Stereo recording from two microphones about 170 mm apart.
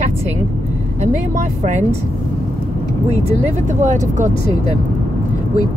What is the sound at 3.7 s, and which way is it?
Speech, 45° right (ahead or behind).